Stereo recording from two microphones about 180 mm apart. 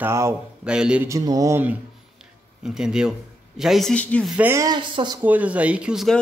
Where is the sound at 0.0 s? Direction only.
15° right (ahead or behind).